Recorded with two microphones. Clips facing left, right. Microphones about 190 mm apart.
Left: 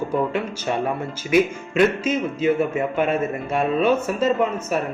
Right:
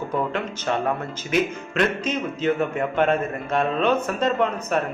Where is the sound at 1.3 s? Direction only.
10° left (ahead or behind).